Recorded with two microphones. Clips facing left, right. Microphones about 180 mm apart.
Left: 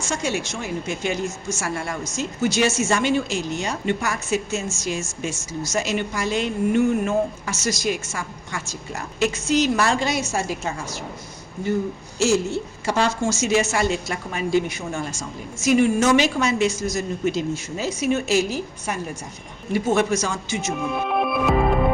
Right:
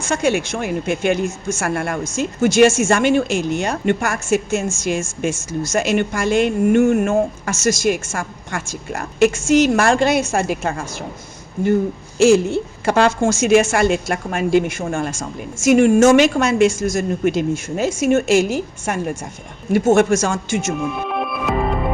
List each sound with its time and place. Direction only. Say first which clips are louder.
0.0 s a woman's voice: right 7 dB; 55° right (ahead or behind)
12.2 s a woman's voice: right 7 dB; 55° right (ahead or behind)